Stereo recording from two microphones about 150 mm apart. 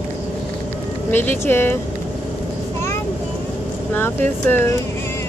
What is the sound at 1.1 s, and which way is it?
Speech, 15° left (ahead or behind).